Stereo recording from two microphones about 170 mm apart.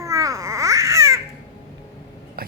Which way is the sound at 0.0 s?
20° right (ahead or behind).